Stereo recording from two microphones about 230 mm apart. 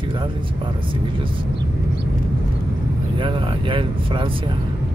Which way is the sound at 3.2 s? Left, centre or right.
Right.